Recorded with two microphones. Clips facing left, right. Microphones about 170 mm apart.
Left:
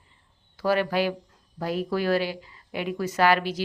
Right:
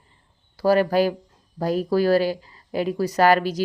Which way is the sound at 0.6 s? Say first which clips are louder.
Right 6 dB; 40° right (ahead or behind).